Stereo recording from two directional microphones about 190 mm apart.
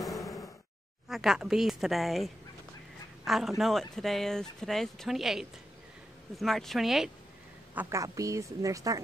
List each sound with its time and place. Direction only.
0.0 s a sound: centre (ahead or behind)
1.0 s speech: centre (ahead or behind)
7.7 s speech: 10° right (ahead or behind)